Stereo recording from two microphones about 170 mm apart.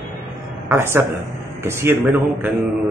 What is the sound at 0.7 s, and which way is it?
A man's voice, 15° right (ahead or behind).